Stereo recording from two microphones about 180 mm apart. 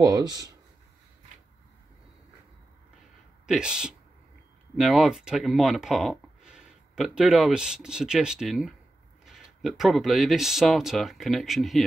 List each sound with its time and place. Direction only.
0.0 s speech: 20° right (ahead or behind)
3.4 s speech: 5° right (ahead or behind)